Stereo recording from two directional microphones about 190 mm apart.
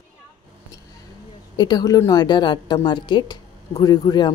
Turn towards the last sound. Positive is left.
turn(degrees=20)  # may be behind; listen again after turning